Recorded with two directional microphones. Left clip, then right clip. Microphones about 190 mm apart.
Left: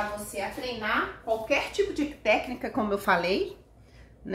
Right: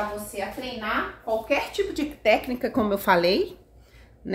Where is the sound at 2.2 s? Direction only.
55° right (ahead or behind).